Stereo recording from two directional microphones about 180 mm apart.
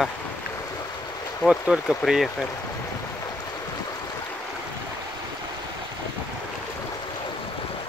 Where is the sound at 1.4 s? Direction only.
5° right (ahead or behind).